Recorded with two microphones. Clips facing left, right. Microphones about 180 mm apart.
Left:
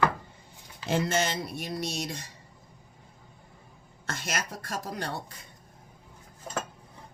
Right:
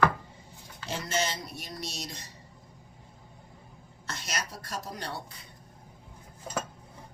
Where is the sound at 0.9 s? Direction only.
55° left (ahead or behind).